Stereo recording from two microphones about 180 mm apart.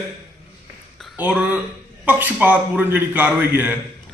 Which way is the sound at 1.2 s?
10° right (ahead or behind).